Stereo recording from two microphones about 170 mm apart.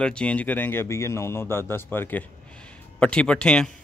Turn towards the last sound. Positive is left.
turn(degrees=5)  # may be behind; listen again after turning